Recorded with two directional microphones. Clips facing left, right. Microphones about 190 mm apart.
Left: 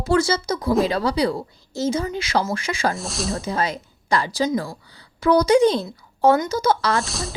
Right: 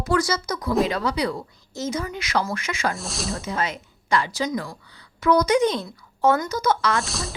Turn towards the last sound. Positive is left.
turn(degrees=0)  # may be behind; listen again after turning